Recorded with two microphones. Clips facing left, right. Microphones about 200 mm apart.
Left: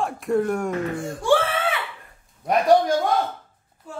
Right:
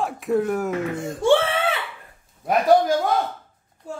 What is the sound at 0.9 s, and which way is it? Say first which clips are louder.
Speech: right 3 dB; 20° right (ahead or behind).